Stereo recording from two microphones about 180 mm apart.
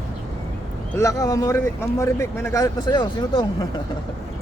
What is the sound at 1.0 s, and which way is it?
Speech, 15° left (ahead or behind).